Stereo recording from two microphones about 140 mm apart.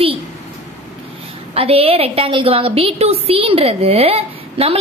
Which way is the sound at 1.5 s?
45° right (ahead or behind).